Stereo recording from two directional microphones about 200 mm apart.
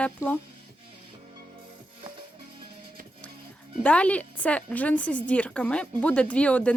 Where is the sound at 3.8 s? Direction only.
5° left (ahead or behind).